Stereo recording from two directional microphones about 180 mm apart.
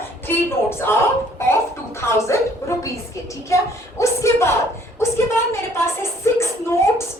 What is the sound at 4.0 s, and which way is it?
A woman's voice, 15° left (ahead or behind).